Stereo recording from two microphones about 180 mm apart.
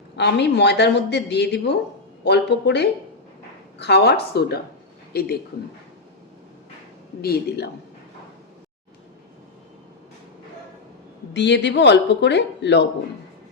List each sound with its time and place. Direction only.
0.2 s a woman's voice: 70° left (ahead or behind)
7.2 s a woman's voice: 60° left (ahead or behind)
11.3 s speech: 75° left (ahead or behind)